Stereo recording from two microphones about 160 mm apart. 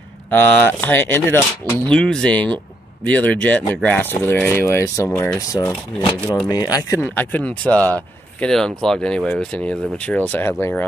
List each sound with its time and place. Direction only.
0.3 s speech: 10° left (ahead or behind)
5.9 s speech: 10° left (ahead or behind)
6.5 s speech: 25° left (ahead or behind)
7.0 s speech: 10° left (ahead or behind)